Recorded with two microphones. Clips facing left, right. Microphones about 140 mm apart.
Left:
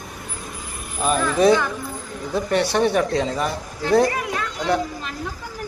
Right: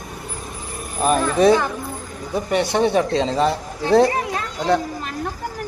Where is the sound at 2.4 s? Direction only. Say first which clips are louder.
Right 1 dB; 20° right (ahead or behind).